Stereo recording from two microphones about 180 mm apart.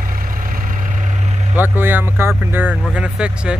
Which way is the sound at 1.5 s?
10° right (ahead or behind).